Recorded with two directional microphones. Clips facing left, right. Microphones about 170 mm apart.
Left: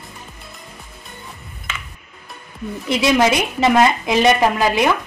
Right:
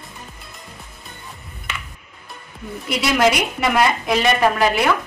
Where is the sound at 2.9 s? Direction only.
25° left (ahead or behind).